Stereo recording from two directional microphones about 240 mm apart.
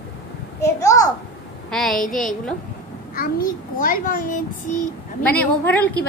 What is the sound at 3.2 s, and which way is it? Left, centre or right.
A child's voice, left.